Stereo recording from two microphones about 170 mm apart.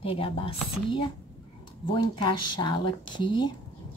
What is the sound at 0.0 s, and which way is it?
A woman's voice, 30° left (ahead or behind).